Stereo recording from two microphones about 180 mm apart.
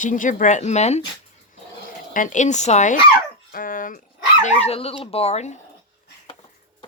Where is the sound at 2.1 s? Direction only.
45° left (ahead or behind).